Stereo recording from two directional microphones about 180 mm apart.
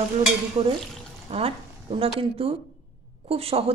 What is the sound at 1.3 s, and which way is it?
Speech, 30° right (ahead or behind).